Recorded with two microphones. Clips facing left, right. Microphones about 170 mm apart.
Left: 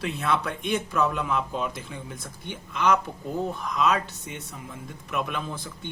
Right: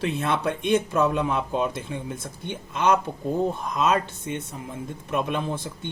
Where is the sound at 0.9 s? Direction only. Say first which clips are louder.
Right 3 dB; 25° right (ahead or behind).